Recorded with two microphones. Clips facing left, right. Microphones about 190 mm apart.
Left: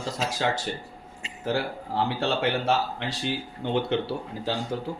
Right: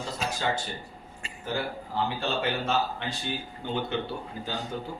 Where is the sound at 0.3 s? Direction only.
85° left.